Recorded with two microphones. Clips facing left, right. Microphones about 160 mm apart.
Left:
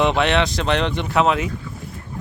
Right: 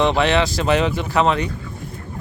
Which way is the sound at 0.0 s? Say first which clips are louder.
Right 1 dB; centre (ahead or behind).